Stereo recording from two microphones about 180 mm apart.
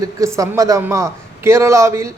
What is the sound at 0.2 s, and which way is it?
A man's voice, 15° right (ahead or behind).